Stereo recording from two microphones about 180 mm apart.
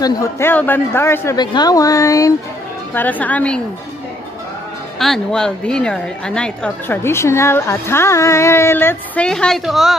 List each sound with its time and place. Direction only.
0.0 s a woman's voice: 15° left (ahead or behind)
4.9 s a woman's voice: centre (ahead or behind)